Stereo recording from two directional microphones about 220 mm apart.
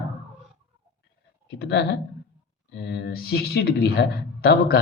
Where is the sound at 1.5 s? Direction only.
50° left (ahead or behind).